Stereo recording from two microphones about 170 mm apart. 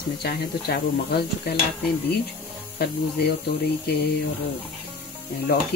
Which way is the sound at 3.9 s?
70° left (ahead or behind).